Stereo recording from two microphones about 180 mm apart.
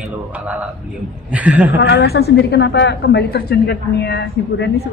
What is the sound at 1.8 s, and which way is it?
A woman's voice, 70° left (ahead or behind).